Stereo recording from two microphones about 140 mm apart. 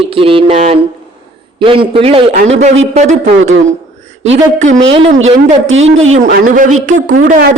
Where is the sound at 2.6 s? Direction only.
55° right (ahead or behind).